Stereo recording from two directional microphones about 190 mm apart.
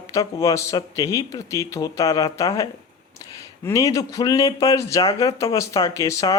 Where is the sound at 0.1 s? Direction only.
20° left (ahead or behind).